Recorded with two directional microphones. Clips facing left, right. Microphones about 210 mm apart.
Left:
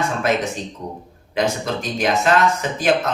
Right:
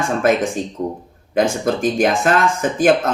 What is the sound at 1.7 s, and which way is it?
Speech, 50° right (ahead or behind).